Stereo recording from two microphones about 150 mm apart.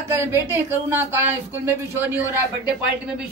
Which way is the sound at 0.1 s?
15° right (ahead or behind).